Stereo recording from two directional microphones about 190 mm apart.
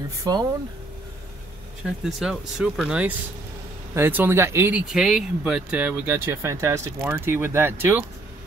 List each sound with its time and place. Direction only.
0.2 s speech: 20° right (ahead or behind)
2.0 s speech: centre (ahead or behind)